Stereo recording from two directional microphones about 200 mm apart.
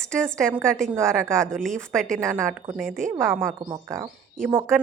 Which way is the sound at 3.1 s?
10° right (ahead or behind).